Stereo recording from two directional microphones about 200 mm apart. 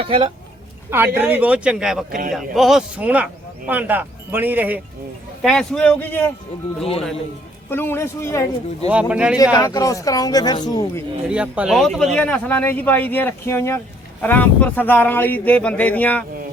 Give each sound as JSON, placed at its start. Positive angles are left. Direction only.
{"t": 0.0, "sound": "speech", "side_deg": -25}
{"t": 0.9, "sound": "a man's voice", "side_deg": -10}
{"t": 5.4, "sound": "a man's voice", "side_deg": 0}
{"t": 7.7, "sound": "speech", "side_deg": 10}
{"t": 8.9, "sound": "a man's voice", "side_deg": -5}
{"t": 9.6, "sound": "speech", "side_deg": 15}
{"t": 11.3, "sound": "speech", "side_deg": -5}